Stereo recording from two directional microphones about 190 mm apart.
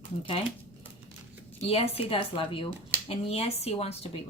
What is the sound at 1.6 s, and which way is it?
Speech, 30° left (ahead or behind).